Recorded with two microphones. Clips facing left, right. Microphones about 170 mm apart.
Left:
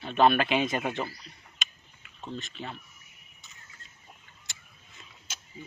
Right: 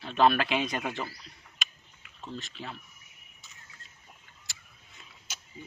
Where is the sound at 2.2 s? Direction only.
Centre (ahead or behind).